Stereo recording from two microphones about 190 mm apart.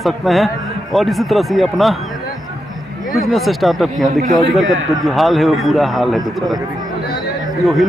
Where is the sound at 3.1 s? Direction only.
Centre (ahead or behind).